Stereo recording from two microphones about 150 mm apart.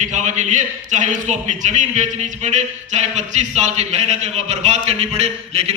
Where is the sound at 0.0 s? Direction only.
55° right (ahead or behind).